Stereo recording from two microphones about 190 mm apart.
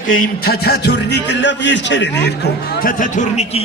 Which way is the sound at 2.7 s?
50° left (ahead or behind).